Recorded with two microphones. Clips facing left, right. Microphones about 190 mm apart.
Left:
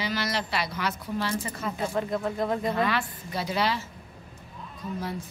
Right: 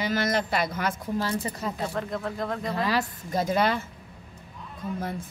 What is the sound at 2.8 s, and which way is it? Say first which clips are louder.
A woman's voice: right 2 dB; 40° right (ahead or behind).